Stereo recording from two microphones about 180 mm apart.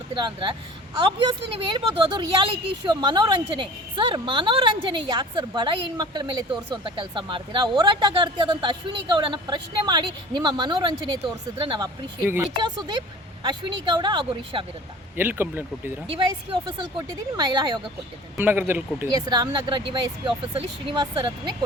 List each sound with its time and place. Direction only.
0.1 s a woman's voice: 25° right (ahead or behind)
15.1 s speech: 10° right (ahead or behind)
16.0 s a woman's voice: 25° right (ahead or behind)
18.3 s speech: 10° right (ahead or behind)
19.1 s a woman's voice: 25° right (ahead or behind)